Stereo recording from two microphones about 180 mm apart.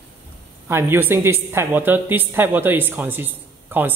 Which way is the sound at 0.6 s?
15° right (ahead or behind).